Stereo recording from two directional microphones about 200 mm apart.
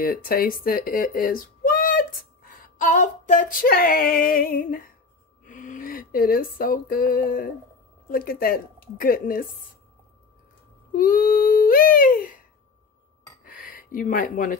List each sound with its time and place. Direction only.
0.0 s speech: 45° left (ahead or behind)
2.5 s female singing: 40° left (ahead or behind)
5.4 s speech: 40° left (ahead or behind)
8.1 s female singing: 45° left (ahead or behind)
10.9 s female singing: 45° left (ahead or behind)
13.4 s a sound: 45° left (ahead or behind)